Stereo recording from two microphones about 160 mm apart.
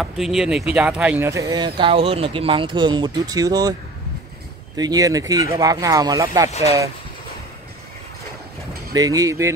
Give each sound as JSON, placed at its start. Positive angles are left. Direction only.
{"t": 0.0, "sound": "speech", "side_deg": 0}
{"t": 4.7, "sound": "speech", "side_deg": -25}
{"t": 8.9, "sound": "speech", "side_deg": -20}